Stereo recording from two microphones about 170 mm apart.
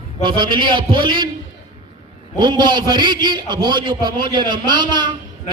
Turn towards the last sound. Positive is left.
turn(degrees=-25)  # may be behind; listen again after turning